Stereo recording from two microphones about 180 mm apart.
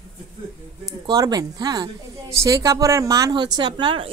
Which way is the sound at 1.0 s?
20° right (ahead or behind).